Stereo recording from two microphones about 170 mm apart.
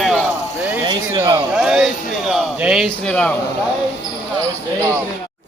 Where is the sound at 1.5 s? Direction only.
5° right (ahead or behind).